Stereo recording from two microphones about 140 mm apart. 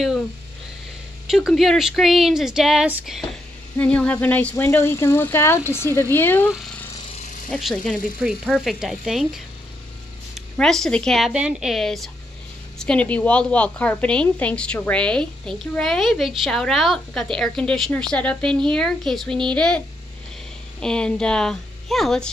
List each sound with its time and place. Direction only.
1.2 s a woman's voice: 5° right (ahead or behind)
3.7 s speech: 10° left (ahead or behind)
6.5 s speech: centre (ahead or behind)
7.1 s a sound: 55° left (ahead or behind)
7.5 s a woman's voice: centre (ahead or behind)
20.8 s a woman's voice: 5° left (ahead or behind)